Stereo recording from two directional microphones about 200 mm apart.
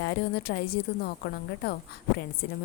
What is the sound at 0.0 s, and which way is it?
A woman's voice, 55° left (ahead or behind).